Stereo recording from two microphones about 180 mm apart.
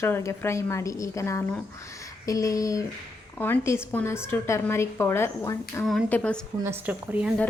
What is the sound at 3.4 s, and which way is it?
Speech, 15° left (ahead or behind).